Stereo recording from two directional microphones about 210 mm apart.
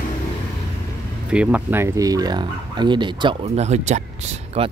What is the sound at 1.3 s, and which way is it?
Speech, 5° right (ahead or behind).